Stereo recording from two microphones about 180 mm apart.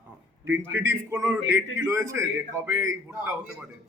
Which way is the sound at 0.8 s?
15° right (ahead or behind).